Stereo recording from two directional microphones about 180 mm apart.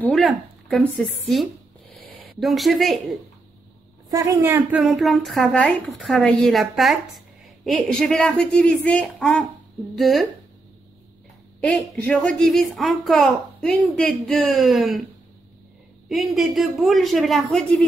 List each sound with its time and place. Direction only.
0.0 s speech: centre (ahead or behind)
4.1 s a woman's voice: 10° right (ahead or behind)
11.6 s a woman's voice: 5° left (ahead or behind)
16.1 s a woman's voice: centre (ahead or behind)